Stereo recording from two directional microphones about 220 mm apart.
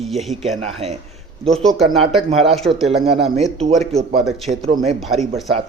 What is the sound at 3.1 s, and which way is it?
Speech, 30° right (ahead or behind).